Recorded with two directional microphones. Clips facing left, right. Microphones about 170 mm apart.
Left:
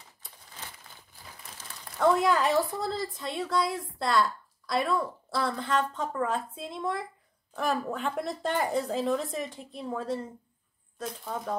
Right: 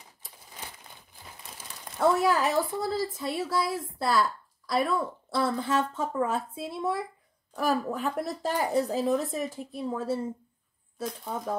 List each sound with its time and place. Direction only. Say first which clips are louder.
1.6 s a woman's voice: right 1 dB; 5° right (ahead or behind)